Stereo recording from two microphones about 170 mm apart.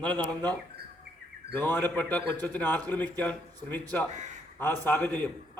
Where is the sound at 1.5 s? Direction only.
10° left (ahead or behind).